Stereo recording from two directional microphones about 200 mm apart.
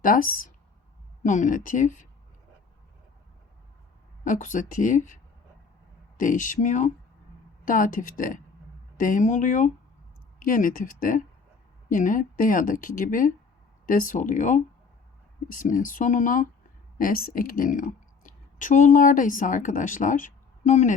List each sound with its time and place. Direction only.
0.0 s speech: 45° left (ahead or behind)
4.2 s a woman's voice: 40° left (ahead or behind)